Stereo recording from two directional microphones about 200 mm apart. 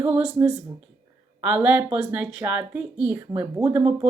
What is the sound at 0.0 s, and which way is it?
A woman's voice, 10° right (ahead or behind).